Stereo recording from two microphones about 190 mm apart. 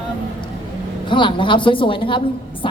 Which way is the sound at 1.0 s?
25° left (ahead or behind).